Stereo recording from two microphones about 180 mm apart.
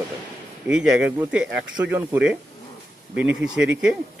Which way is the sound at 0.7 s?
5° right (ahead or behind).